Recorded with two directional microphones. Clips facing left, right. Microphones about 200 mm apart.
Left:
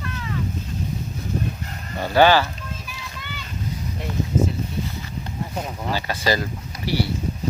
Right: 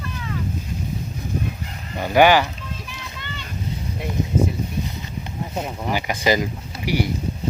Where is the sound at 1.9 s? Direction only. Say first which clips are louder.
Right 1 dB; 15° right (ahead or behind).